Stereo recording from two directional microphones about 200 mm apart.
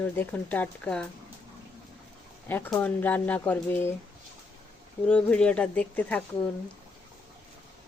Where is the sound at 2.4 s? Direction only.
10° left (ahead or behind).